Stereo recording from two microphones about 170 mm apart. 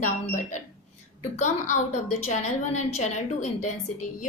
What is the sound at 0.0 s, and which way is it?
A woman's voice, 45° left (ahead or behind).